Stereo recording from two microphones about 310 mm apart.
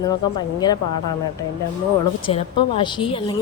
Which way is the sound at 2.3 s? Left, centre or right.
Centre.